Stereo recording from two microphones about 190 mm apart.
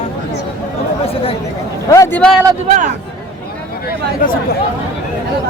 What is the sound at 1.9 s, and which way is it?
Speech, 15° left (ahead or behind).